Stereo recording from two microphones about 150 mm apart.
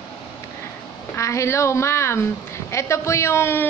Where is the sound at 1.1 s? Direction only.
20° left (ahead or behind).